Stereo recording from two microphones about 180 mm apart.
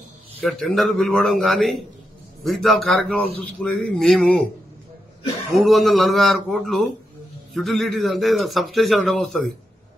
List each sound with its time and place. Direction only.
0.4 s a man's voice: 5° left (ahead or behind)
5.6 s a man's voice: centre (ahead or behind)